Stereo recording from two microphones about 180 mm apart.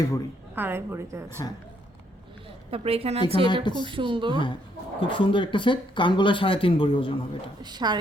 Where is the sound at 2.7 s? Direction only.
35° right (ahead or behind).